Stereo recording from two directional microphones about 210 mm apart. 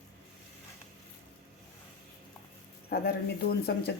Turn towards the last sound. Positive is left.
turn(degrees=50)  # may be behind; listen again after turning